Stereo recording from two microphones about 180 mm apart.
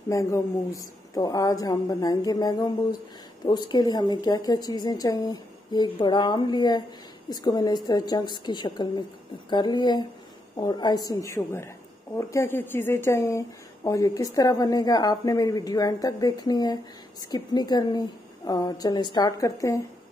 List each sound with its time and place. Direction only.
0.1 s a woman's voice: 15° left (ahead or behind)